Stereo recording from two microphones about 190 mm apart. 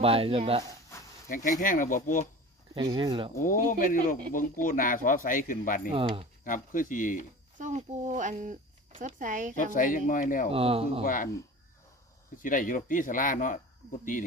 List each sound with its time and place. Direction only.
0.0 s a child's voice: 30° right (ahead or behind)
1.6 s speech: 45° left (ahead or behind)
2.7 s speech: 20° right (ahead or behind)
3.3 s speech: 45° left (ahead or behind)
5.9 s speech: 30° right (ahead or behind)
6.4 s speech: 45° left (ahead or behind)
7.5 s a child's voice: 40° right (ahead or behind)
9.8 s speech: 45° left (ahead or behind)
10.5 s a child's voice: 30° right (ahead or behind)
11.0 s speech: 45° left (ahead or behind)
12.4 s speech: 45° left (ahead or behind)